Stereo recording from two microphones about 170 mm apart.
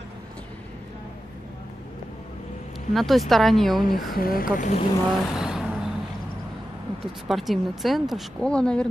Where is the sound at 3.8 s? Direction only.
55° left (ahead or behind).